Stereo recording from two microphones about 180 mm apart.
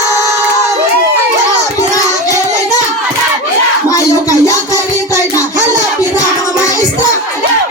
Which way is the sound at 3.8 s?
20° left (ahead or behind).